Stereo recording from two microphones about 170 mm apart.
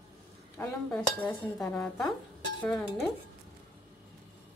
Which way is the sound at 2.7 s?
Centre (ahead or behind).